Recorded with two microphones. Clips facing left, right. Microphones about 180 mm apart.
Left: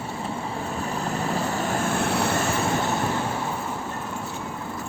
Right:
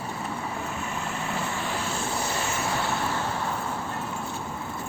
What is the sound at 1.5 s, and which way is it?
Vehicle, 45° left (ahead or behind).